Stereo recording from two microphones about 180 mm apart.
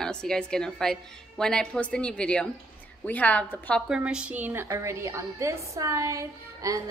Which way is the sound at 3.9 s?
5° right (ahead or behind).